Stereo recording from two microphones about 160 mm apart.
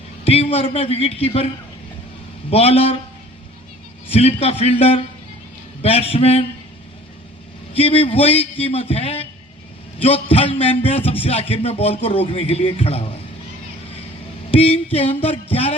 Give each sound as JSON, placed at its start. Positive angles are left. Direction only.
{"t": 0.3, "sound": "speech", "side_deg": 40}
{"t": 2.5, "sound": "speech", "side_deg": 40}
{"t": 4.1, "sound": "speech", "side_deg": 40}
{"t": 7.7, "sound": "speech", "side_deg": 35}
{"t": 14.5, "sound": "a sound", "side_deg": 35}
{"t": 14.9, "sound": "speech", "side_deg": 35}